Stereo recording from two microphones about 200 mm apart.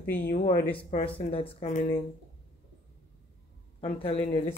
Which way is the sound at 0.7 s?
25° left (ahead or behind).